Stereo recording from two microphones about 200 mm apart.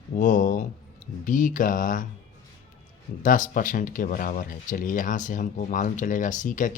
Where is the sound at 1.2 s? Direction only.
40° left (ahead or behind).